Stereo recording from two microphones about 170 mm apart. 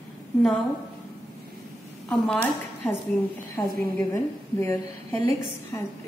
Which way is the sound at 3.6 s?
20° left (ahead or behind).